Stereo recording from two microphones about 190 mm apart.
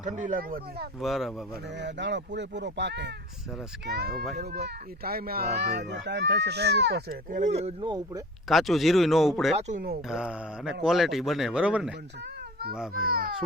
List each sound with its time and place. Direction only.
0.0 s speech: 45° right (ahead or behind)
0.9 s speech: centre (ahead or behind)
1.8 s speech: 65° right (ahead or behind); by 8.2 s 20° right (ahead or behind)
8.4 s speech: centre (ahead or behind)
9.6 s speech: 35° right (ahead or behind)
10.1 s speech: 5° right (ahead or behind)
12.9 s speech: 50° right (ahead or behind)